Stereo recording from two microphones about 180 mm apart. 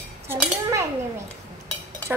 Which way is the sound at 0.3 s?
15° right (ahead or behind).